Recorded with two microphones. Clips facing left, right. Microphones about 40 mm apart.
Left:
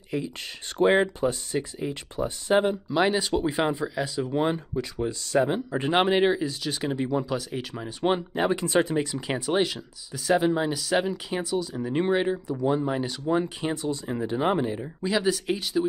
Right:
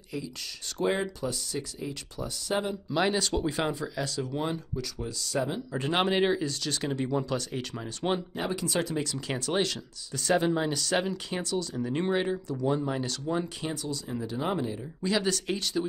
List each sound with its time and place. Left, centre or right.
0.1 s speech: left
2.9 s speech: centre
4.3 s speech: left; by 8.1 s centre
8.5 s speech: left
9.5 s speech: centre; by 14.9 s left
15.0 s speech: centre